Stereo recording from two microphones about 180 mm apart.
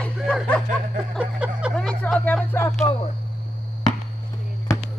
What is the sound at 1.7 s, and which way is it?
Speech, 5° left (ahead or behind).